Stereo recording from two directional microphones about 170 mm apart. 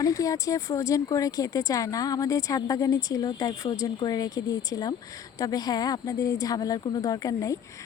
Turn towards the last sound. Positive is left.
turn(degrees=20)  # may be behind; listen again after turning